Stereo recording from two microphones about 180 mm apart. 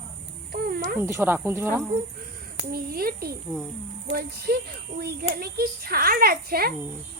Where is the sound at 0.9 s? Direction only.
15° right (ahead or behind).